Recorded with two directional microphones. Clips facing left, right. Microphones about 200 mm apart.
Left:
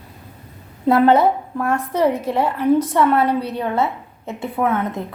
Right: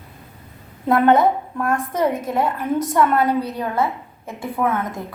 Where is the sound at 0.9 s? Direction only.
30° left (ahead or behind).